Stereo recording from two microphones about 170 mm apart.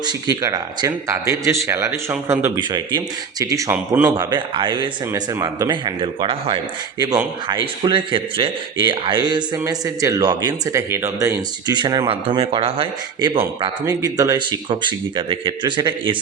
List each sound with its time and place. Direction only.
0.0 s a man's voice: 20° right (ahead or behind)
2.6 s a man's voice: 25° right (ahead or behind)
13.8 s a man's voice: 20° right (ahead or behind)